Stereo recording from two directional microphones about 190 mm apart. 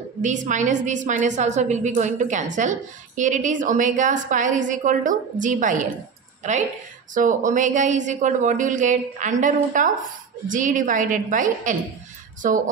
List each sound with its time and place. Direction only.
0.2 s a woman's voice: 40° right (ahead or behind)
7.2 s a woman's voice: 40° right (ahead or behind)